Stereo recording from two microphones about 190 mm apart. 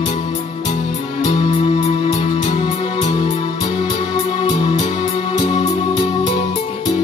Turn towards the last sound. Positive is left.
turn(degrees=35)  # may be behind; listen again after turning